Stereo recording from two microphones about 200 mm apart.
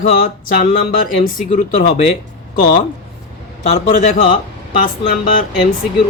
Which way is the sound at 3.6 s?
35° left (ahead or behind).